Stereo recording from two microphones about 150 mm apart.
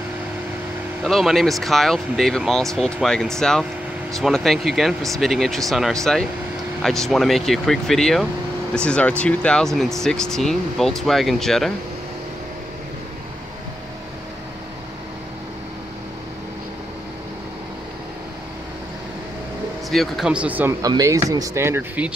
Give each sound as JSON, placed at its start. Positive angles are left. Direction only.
{"t": 1.0, "sound": "speech", "side_deg": 0}
{"t": 19.9, "sound": "speech", "side_deg": 0}
{"t": 20.8, "sound": "speech", "side_deg": -25}